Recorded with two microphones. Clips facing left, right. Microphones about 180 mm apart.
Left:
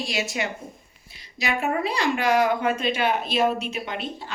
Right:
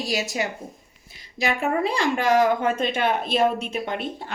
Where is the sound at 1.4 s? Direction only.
55° right (ahead or behind).